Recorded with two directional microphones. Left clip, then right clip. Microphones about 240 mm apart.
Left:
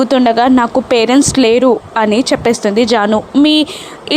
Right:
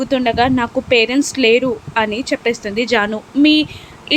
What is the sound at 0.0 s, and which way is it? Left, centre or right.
A woman's voice, left.